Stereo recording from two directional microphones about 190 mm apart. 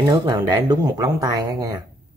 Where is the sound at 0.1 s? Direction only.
20° right (ahead or behind).